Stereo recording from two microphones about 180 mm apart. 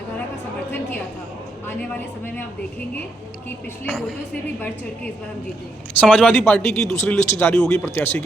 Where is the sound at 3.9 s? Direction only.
5° left (ahead or behind).